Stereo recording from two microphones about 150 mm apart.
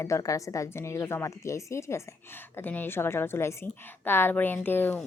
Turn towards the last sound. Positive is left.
turn(degrees=15)  # may be behind; listen again after turning